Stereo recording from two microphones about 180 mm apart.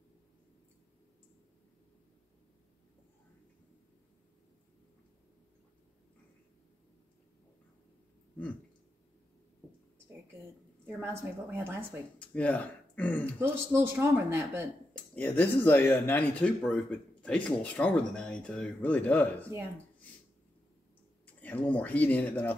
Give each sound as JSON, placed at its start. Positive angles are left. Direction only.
{"t": 11.5, "sound": "speech", "side_deg": -15}
{"t": 12.2, "sound": "speech", "side_deg": 5}
{"t": 13.2, "sound": "speech", "side_deg": -15}
{"t": 15.1, "sound": "speech", "side_deg": 10}
{"t": 21.3, "sound": "speech", "side_deg": 10}